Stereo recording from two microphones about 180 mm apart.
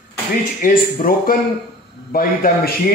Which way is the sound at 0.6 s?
50° left (ahead or behind).